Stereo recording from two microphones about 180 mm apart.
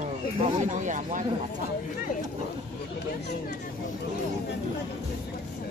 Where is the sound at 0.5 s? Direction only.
45° right (ahead or behind).